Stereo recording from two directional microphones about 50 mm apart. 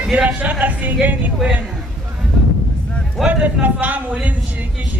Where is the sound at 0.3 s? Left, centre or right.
Right.